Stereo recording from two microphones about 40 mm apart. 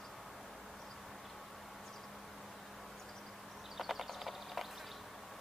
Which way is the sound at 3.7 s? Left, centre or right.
Centre.